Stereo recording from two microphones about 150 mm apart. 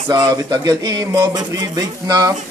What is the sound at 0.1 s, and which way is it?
Speech, 30° right (ahead or behind).